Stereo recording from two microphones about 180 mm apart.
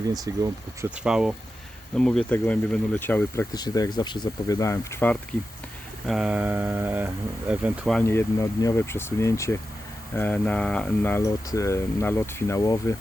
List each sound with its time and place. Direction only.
0.1 s speech: 20° right (ahead or behind)
0.9 s speech: 5° right (ahead or behind)
3.5 s speech: 20° left (ahead or behind)
6.1 s speech: 5° right (ahead or behind)
7.9 s speech: 15° left (ahead or behind)